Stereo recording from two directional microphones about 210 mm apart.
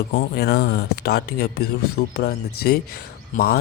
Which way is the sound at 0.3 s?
50° left (ahead or behind).